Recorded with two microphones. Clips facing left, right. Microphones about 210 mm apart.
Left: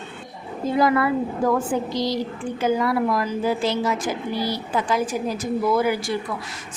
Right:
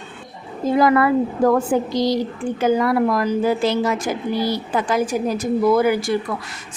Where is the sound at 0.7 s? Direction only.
50° right (ahead or behind).